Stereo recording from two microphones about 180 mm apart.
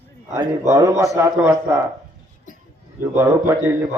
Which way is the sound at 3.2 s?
10° right (ahead or behind).